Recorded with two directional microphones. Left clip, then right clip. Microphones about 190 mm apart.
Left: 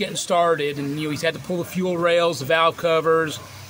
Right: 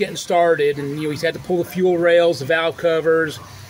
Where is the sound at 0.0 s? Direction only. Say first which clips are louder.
Right 3 dB; 5° right (ahead or behind).